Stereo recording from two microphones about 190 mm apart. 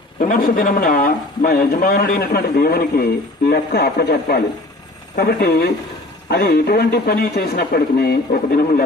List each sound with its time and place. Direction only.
0.2 s a man's voice: 45° left (ahead or behind)